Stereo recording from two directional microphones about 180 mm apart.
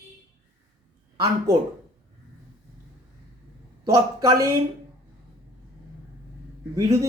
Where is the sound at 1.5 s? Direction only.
15° right (ahead or behind).